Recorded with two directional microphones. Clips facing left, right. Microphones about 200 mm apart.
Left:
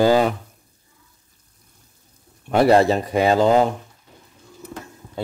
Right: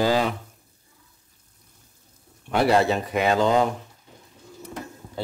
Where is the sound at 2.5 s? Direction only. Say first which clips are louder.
Left 5 dB; 40° left (ahead or behind).